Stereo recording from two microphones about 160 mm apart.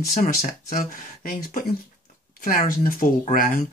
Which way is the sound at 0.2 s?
55° left (ahead or behind).